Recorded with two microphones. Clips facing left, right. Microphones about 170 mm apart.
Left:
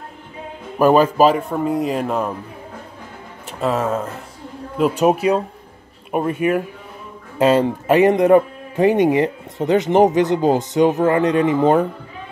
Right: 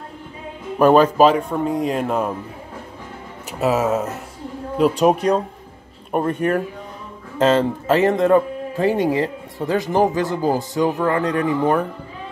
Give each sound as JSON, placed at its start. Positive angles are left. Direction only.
{"t": 0.7, "sound": "speech", "side_deg": 5}
{"t": 3.5, "sound": "speech", "side_deg": -5}
{"t": 5.0, "sound": "speech", "side_deg": 5}